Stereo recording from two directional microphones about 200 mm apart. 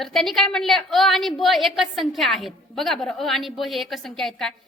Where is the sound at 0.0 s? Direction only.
Centre (ahead or behind).